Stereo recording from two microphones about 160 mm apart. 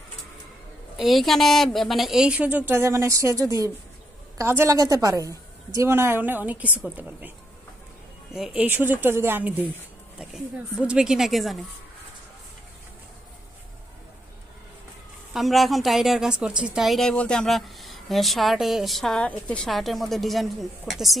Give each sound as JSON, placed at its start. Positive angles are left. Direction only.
{"t": 0.9, "sound": "a woman's voice", "side_deg": 0}
{"t": 15.3, "sound": "a woman's voice", "side_deg": 0}